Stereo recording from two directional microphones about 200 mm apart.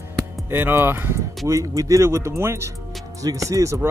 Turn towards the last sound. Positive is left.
turn(degrees=-15)  # may be behind; listen again after turning